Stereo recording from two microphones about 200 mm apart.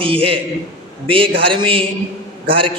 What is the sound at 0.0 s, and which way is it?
Speech, 25° right (ahead or behind).